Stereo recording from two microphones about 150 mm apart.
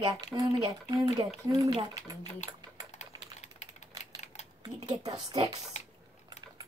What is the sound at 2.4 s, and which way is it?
Typing, 50° left (ahead or behind).